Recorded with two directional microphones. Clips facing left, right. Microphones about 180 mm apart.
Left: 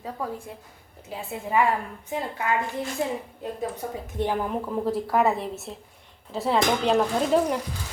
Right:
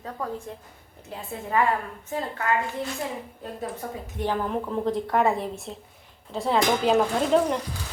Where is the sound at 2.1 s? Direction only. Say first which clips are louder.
Even; 15° left (ahead or behind).